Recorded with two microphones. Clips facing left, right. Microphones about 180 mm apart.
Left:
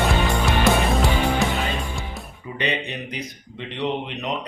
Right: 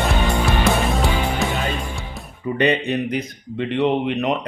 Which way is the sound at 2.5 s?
50° right (ahead or behind).